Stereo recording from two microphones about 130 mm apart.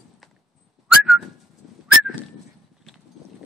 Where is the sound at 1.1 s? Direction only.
10° right (ahead or behind).